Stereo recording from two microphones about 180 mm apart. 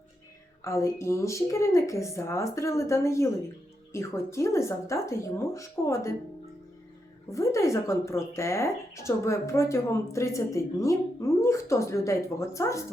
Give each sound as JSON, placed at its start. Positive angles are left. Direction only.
{"t": 0.6, "sound": "a woman's voice", "side_deg": 15}
{"t": 7.3, "sound": "a woman's voice", "side_deg": 15}